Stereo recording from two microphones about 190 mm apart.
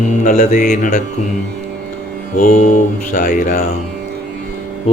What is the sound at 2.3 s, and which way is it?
Mantra, 40° left (ahead or behind).